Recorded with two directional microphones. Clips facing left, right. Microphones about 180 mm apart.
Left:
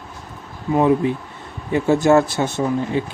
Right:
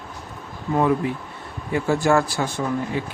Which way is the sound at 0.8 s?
20° left (ahead or behind).